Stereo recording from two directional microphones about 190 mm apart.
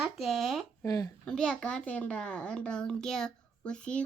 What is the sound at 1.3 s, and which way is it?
A child's voice, 5° left (ahead or behind).